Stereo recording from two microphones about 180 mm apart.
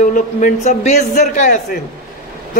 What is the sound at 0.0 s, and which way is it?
A man's voice, 45° left (ahead or behind).